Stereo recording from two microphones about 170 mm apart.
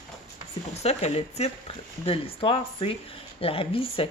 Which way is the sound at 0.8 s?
35° left (ahead or behind).